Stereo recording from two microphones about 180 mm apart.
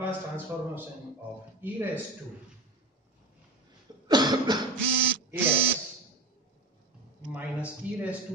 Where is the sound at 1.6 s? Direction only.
10° right (ahead or behind).